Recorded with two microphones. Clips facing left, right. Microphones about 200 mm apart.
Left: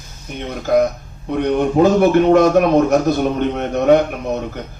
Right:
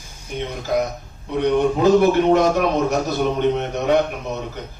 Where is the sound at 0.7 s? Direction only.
55° left (ahead or behind).